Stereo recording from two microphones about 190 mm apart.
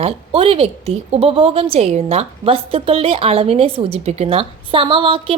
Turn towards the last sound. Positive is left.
turn(degrees=-30)  # may be behind; listen again after turning